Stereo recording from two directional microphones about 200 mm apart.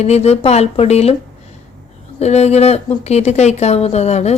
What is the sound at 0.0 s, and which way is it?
A woman's voice, 30° left (ahead or behind).